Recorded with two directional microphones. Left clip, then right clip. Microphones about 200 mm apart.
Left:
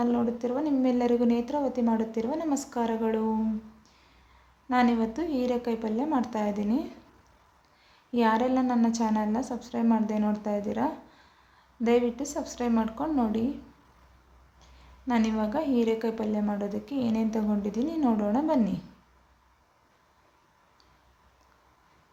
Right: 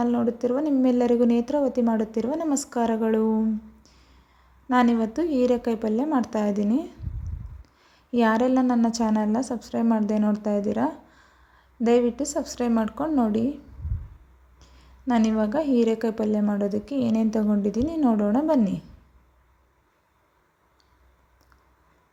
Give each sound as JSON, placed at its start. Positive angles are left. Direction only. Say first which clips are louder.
{"t": 0.0, "sound": "a woman's voice", "louder": "right 4 dB", "side_deg": -25}
{"t": 4.7, "sound": "a woman's voice", "louder": "right 4 dB", "side_deg": -30}
{"t": 8.1, "sound": "a woman's voice", "louder": "right 3 dB", "side_deg": -30}
{"t": 14.6, "sound": "a woman's voice", "louder": "right 5 dB", "side_deg": -30}